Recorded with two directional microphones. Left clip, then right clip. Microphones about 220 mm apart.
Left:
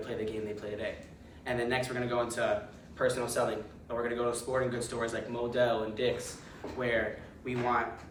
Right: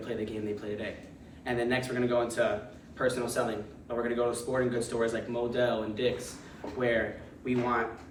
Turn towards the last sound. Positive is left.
turn(degrees=5)  # may be behind; listen again after turning